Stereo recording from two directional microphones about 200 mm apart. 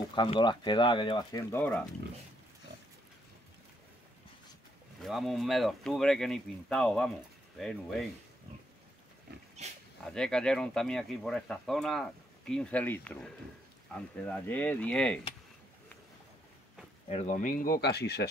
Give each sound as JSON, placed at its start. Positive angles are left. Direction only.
{"t": 0.1, "sound": "speech", "side_deg": 25}
{"t": 1.5, "sound": "speech", "side_deg": 5}
{"t": 5.0, "sound": "speech", "side_deg": 0}
{"t": 9.6, "sound": "speech", "side_deg": -35}
{"t": 10.0, "sound": "speech", "side_deg": 5}
{"t": 17.1, "sound": "speech", "side_deg": 35}